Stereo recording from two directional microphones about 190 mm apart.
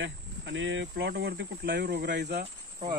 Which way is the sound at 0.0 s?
75° right (ahead or behind).